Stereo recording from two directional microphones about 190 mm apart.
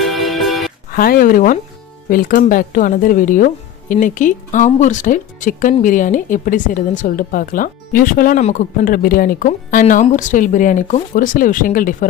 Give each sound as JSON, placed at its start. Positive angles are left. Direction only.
{"t": 0.0, "sound": "music", "side_deg": 0}
{"t": 0.9, "sound": "speech", "side_deg": 50}